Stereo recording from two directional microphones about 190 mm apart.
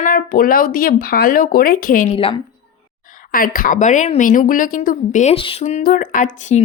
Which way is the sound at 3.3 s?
50° left (ahead or behind).